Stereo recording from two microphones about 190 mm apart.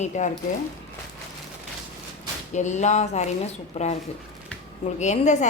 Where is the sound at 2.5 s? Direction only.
40° left (ahead or behind).